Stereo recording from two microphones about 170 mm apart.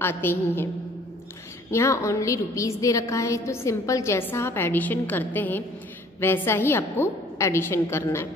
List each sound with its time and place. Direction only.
0.0 s a woman's voice: 15° left (ahead or behind)
1.7 s a woman's voice: 15° left (ahead or behind)